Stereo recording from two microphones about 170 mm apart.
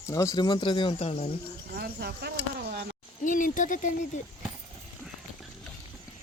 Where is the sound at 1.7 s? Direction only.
65° right (ahead or behind).